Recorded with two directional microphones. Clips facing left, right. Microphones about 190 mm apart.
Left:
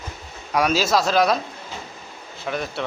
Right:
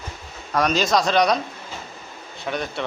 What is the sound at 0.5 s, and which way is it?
Speech, 5° left (ahead or behind).